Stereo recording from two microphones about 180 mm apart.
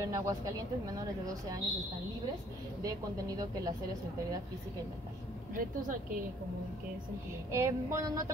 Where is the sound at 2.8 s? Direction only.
20° right (ahead or behind).